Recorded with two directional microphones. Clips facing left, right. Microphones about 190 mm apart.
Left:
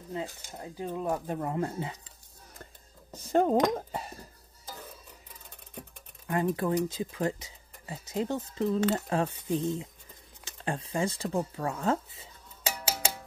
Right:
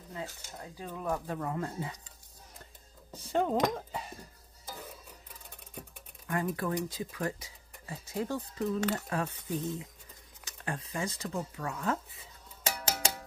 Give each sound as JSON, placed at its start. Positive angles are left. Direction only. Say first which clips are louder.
{"t": 0.1, "sound": "speech", "louder": "left 5 dB", "side_deg": 20}
{"t": 3.3, "sound": "speech", "louder": "left 5 dB", "side_deg": 45}
{"t": 6.2, "sound": "speech", "louder": "left 4 dB", "side_deg": 25}
{"t": 12.6, "sound": "music", "louder": "left 1 dB", "side_deg": 5}